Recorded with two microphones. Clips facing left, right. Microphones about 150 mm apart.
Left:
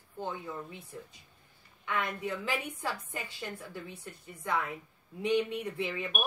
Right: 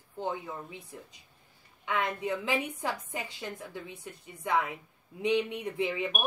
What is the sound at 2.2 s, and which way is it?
A woman's voice, 20° right (ahead or behind).